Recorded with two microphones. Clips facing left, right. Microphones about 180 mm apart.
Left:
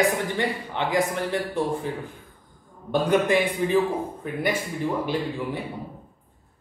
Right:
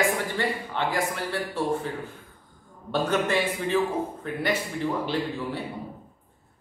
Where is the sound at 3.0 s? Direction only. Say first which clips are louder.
Left 4 dB; 15° left (ahead or behind).